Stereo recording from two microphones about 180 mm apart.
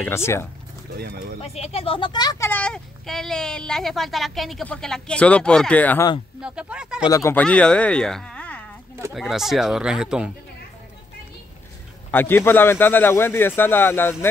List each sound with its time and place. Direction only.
0.0 s a man's voice: 15° left (ahead or behind)
0.9 s speech: 60° right (ahead or behind)
1.4 s speech: 35° left (ahead or behind); by 6.0 s 10° left (ahead or behind)
6.4 s speech: 5° right (ahead or behind)
7.1 s a man's voice: 15° left (ahead or behind); by 10.3 s 5° right (ahead or behind)
12.1 s a man's voice: 10° left (ahead or behind)